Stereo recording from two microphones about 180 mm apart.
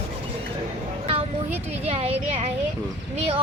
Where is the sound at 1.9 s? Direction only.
35° right (ahead or behind).